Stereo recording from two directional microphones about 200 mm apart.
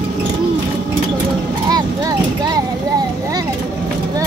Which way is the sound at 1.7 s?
20° right (ahead or behind).